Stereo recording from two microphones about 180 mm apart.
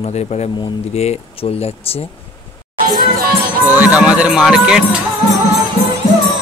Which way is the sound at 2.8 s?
50° right (ahead or behind).